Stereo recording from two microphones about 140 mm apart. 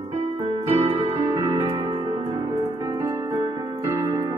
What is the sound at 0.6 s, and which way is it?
Keyboard, 45° right (ahead or behind).